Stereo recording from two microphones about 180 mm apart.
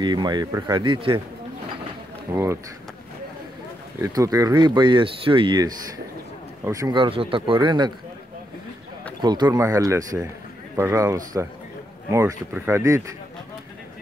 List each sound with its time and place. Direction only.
0.0 s speech: 25° right (ahead or behind)
2.3 s speech: 15° right (ahead or behind)
4.1 s speech: 20° right (ahead or behind)
9.2 s speech: 25° right (ahead or behind)